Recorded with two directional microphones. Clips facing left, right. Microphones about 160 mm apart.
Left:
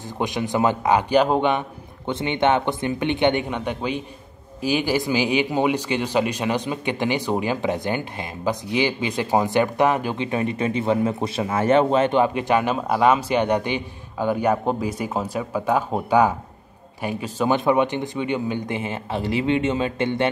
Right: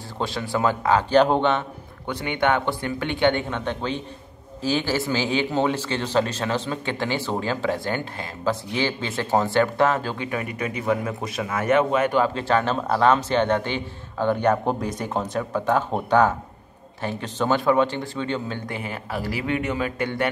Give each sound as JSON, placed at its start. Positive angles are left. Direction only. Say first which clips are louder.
{"t": 0.2, "sound": "speech", "louder": "left 2 dB", "side_deg": 15}
{"t": 2.0, "sound": "speech", "louder": "left 2 dB", "side_deg": 20}